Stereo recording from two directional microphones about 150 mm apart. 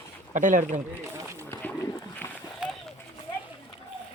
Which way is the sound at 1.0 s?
20° right (ahead or behind).